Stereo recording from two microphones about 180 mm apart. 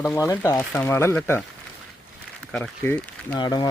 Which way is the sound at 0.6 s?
5° left (ahead or behind).